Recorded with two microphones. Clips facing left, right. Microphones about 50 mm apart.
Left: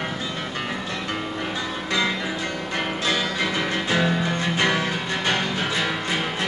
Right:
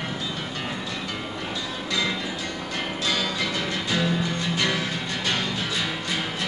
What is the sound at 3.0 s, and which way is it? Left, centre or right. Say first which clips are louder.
Music: left 2 dB; left.